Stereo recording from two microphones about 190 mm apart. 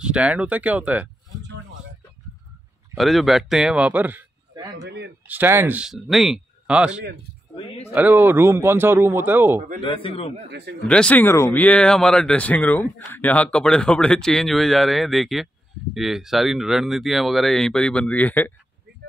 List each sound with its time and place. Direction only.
0.0 s speech: 5° right (ahead or behind)
3.0 s speech: centre (ahead or behind)
4.8 s speech: 65° right (ahead or behind)
5.2 s speech: 10° right (ahead or behind)
7.5 s speech: 30° left (ahead or behind)
7.9 s speech: 10° right (ahead or behind)
9.8 s a man's voice: 25° left (ahead or behind)
10.5 s speech: 60° right (ahead or behind)
10.9 s speech: 5° left (ahead or behind)